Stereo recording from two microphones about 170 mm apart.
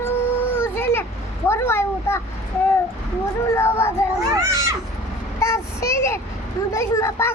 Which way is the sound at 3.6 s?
15° left (ahead or behind).